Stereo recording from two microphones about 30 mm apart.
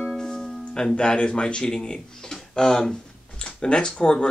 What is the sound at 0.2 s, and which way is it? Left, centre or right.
Music, left.